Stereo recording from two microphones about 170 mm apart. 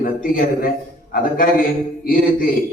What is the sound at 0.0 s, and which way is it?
A man's voice, 55° left (ahead or behind).